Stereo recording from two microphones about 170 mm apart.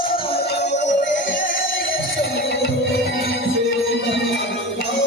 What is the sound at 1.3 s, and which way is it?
Music, 55° left (ahead or behind).